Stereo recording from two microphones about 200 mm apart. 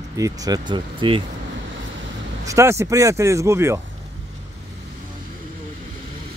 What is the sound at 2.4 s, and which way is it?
Speech, 15° right (ahead or behind).